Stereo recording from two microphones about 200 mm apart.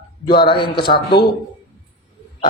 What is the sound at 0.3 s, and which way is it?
Speech, 25° left (ahead or behind).